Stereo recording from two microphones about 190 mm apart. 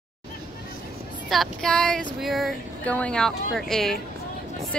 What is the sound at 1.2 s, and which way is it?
Speech, centre (ahead or behind).